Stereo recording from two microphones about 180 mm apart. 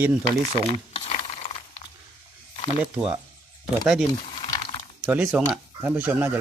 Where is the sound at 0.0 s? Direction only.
15° right (ahead or behind).